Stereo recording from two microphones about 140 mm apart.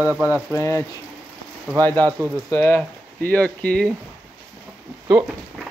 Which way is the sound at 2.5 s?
15° left (ahead or behind).